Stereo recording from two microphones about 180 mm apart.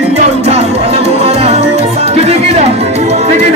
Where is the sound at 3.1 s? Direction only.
40° right (ahead or behind).